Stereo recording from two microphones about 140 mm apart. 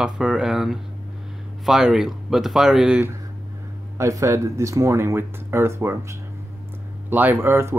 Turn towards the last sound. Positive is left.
turn(degrees=-15)  # may be behind; listen again after turning